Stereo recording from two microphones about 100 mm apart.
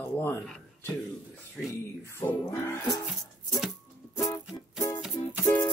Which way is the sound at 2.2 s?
30° left (ahead or behind).